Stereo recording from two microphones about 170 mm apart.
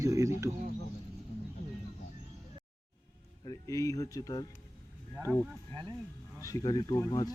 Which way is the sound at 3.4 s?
20° left (ahead or behind).